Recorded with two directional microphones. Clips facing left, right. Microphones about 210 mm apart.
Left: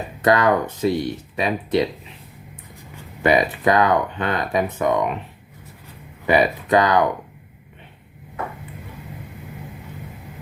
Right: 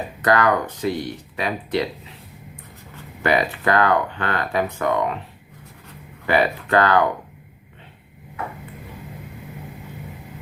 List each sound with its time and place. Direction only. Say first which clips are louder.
0.2 s speech: left 2 dB; 20° left (ahead or behind)
2.9 s speech: left 3 dB; 20° left (ahead or behind)
6.2 s speech: left 2 dB; 15° left (ahead or behind)